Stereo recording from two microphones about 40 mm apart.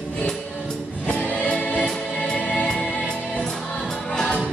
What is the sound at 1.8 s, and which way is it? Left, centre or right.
Music, centre.